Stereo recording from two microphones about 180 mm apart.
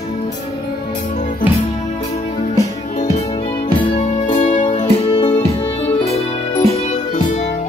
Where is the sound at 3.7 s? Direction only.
30° left (ahead or behind).